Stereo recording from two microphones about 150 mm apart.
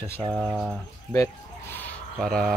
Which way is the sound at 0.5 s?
Centre (ahead or behind).